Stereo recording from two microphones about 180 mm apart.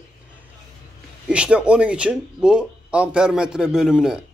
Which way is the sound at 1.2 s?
5° right (ahead or behind).